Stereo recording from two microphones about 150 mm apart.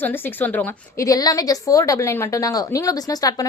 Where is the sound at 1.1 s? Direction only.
25° left (ahead or behind).